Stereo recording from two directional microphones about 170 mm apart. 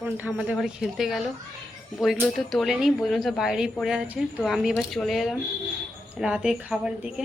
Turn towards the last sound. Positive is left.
turn(degrees=-5)  # may be behind; listen again after turning